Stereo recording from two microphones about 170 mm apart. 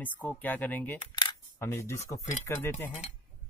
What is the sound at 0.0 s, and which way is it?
Speech, 10° left (ahead or behind).